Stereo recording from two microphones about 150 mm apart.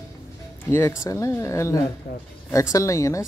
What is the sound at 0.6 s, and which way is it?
Speech, 20° left (ahead or behind).